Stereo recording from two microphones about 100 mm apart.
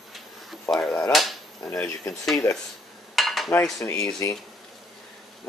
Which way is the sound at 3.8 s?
30° left (ahead or behind).